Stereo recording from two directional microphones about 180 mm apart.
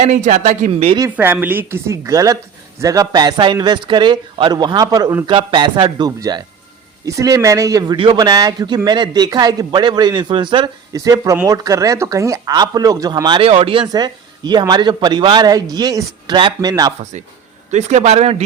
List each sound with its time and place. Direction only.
0.0 s speech: 40° right (ahead or behind)
1.1 s a woman's voice: 10° right (ahead or behind)
17.7 s speech: 40° right (ahead or behind)